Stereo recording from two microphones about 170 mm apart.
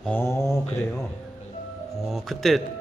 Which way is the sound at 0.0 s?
10° left (ahead or behind).